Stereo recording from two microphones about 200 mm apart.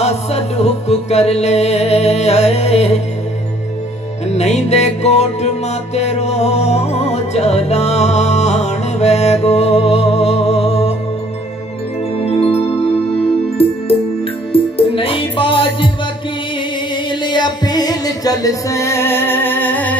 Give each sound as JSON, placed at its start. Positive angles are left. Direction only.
{"t": 0.0, "sound": "music", "side_deg": 30}
{"t": 4.3, "sound": "music", "side_deg": 35}
{"t": 12.2, "sound": "music", "side_deg": 30}
{"t": 16.9, "sound": "music", "side_deg": 20}